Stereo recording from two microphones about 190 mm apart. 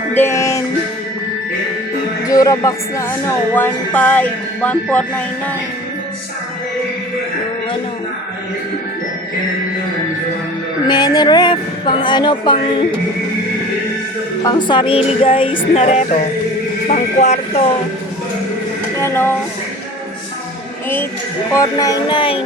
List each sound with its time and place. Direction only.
0.1 s speech: 10° left (ahead or behind)
2.2 s speech: 20° left (ahead or behind)
10.8 s speech: 20° left (ahead or behind)
14.4 s speech: 25° left (ahead or behind)
18.9 s speech: 15° left (ahead or behind)
21.5 s speech: 20° left (ahead or behind)